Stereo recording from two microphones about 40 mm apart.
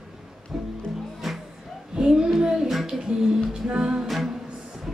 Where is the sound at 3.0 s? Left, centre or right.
Centre.